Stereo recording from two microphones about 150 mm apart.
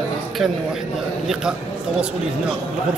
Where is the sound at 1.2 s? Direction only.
5° right (ahead or behind).